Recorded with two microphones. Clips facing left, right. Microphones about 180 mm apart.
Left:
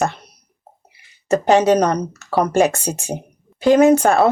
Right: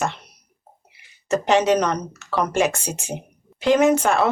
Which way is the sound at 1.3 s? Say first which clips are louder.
Left 4 dB; 35° left (ahead or behind).